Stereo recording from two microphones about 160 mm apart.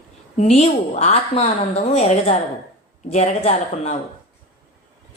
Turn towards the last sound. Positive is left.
turn(degrees=45)  # may be behind; listen again after turning